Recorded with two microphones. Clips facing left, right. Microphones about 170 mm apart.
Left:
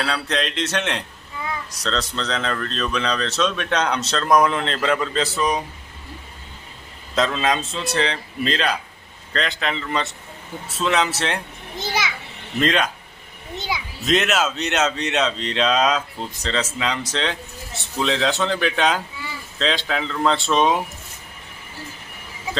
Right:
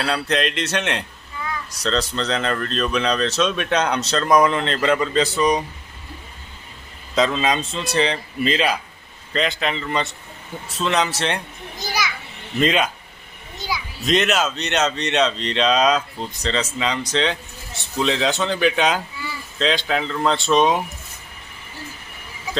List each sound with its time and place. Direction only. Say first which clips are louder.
0.0 s speech: right 2 dB; centre (ahead or behind)
7.2 s speech: right 1 dB; centre (ahead or behind)
11.8 s children playing: left 1 dB; 25° left (ahead or behind)
12.5 s speech: right 1 dB; 5° right (ahead or behind)
13.6 s children playing: even; 20° left (ahead or behind)
14.0 s speech: right 1 dB; centre (ahead or behind)